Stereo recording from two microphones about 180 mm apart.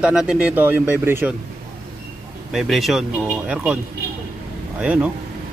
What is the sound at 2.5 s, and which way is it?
Speech, centre (ahead or behind).